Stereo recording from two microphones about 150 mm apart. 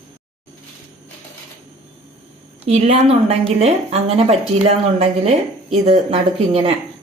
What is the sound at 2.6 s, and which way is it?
A woman's voice, 45° right (ahead or behind).